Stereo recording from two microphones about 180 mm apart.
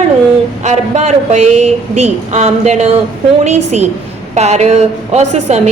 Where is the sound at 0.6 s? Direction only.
40° right (ahead or behind).